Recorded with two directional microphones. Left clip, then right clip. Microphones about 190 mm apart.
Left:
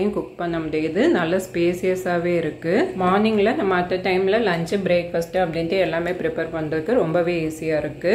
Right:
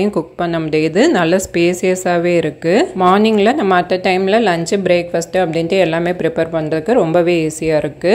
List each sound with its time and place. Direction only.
0.0 s a woman's voice: 45° right (ahead or behind)